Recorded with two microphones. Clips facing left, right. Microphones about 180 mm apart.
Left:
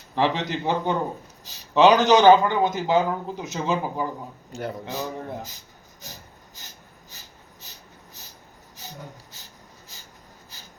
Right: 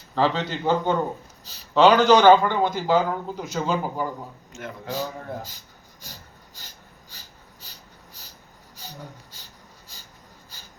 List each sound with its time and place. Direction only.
0.2 s speech: 15° left (ahead or behind)
4.5 s speech: 35° left (ahead or behind)
4.9 s speech: 20° left (ahead or behind)